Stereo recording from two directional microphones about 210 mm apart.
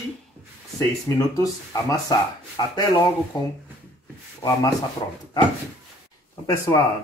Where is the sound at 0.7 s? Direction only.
15° left (ahead or behind).